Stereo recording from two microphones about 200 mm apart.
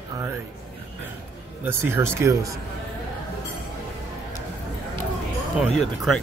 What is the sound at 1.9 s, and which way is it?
Speech, 10° right (ahead or behind).